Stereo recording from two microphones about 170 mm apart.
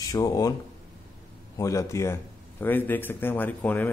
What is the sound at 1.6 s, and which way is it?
Speech, 20° left (ahead or behind).